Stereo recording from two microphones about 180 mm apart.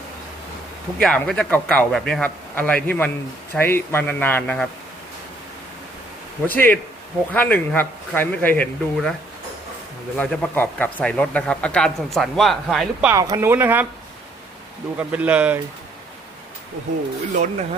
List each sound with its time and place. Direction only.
0.9 s a man's voice: 5° left (ahead or behind)
6.5 s a man's voice: 10° left (ahead or behind)
10.2 s speech: 10° left (ahead or behind)
13.1 s speech: 20° right (ahead or behind)
14.9 s speech: 10° right (ahead or behind)
17.3 s speech: 40° right (ahead or behind)